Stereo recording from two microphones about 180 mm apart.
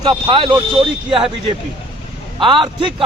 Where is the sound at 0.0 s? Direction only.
25° right (ahead or behind).